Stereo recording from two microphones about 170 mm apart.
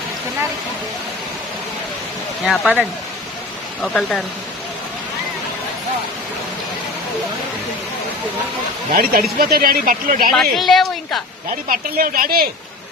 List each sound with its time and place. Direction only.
2.4 s a woman's voice: 5° right (ahead or behind)
8.9 s speech: 60° right (ahead or behind)
10.3 s a woman's voice: centre (ahead or behind)
11.7 s speech: 55° right (ahead or behind)